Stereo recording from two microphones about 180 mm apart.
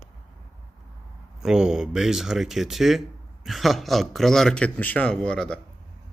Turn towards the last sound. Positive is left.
turn(degrees=5)  # may be behind; listen again after turning